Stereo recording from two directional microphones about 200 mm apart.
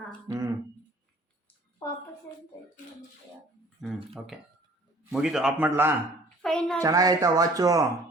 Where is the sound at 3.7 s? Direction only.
Centre (ahead or behind).